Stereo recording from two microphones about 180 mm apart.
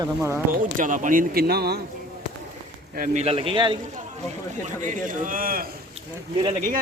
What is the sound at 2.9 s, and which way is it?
Speech, 45° right (ahead or behind).